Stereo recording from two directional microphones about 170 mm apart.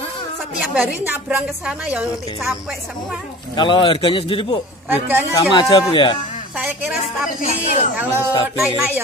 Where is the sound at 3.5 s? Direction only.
30° left (ahead or behind).